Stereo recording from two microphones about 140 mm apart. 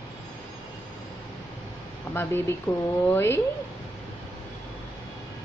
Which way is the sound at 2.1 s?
15° left (ahead or behind).